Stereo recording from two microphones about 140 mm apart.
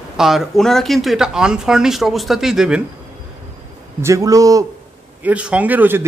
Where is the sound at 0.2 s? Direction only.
Centre (ahead or behind).